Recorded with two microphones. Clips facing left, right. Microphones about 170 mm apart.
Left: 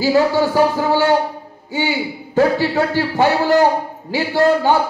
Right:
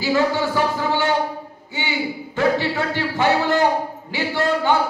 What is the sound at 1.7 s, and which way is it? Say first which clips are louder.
A man's voice: left 5 dB; 40° left (ahead or behind).